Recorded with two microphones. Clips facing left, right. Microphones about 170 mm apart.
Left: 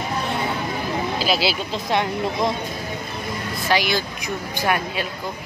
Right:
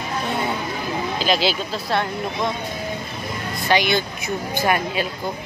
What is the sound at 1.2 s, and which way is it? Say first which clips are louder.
Speech: right 3 dB; 5° left (ahead or behind).